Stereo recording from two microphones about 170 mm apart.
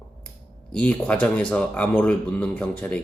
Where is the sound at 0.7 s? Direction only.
5° left (ahead or behind).